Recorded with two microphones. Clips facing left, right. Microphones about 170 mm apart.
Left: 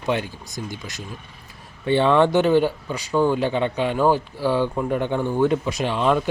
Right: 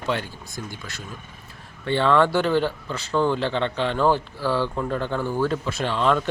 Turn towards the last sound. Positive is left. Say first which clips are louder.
# left 2 dB
turn(degrees=15)  # may be behind; listen again after turning